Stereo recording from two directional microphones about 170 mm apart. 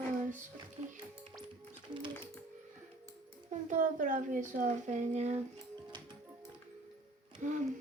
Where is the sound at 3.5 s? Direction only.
50° right (ahead or behind).